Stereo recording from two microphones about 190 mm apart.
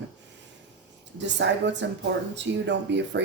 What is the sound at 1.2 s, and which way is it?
Speech, 70° right (ahead or behind).